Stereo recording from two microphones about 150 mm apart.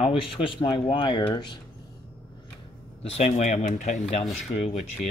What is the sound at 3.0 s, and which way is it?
Speech, 45° left (ahead or behind).